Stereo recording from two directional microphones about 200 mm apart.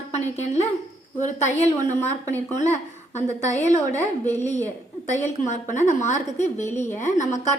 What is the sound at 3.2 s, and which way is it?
A woman's voice, 35° left (ahead or behind).